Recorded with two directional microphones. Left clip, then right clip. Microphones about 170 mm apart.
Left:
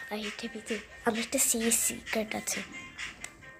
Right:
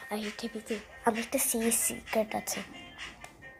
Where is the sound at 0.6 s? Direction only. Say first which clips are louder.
Right 1 dB; 10° left (ahead or behind).